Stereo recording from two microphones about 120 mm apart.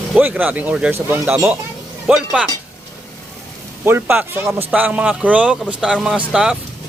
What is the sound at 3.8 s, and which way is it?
Speech, 15° right (ahead or behind).